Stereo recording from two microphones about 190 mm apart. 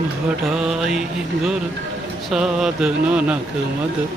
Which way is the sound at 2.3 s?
Centre (ahead or behind).